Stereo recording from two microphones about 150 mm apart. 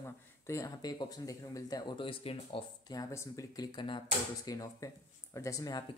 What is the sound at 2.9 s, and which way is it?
Speech, 20° left (ahead or behind).